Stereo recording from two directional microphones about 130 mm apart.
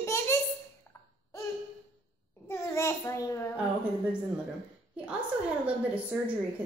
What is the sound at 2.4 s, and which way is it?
A child's voice, 20° left (ahead or behind).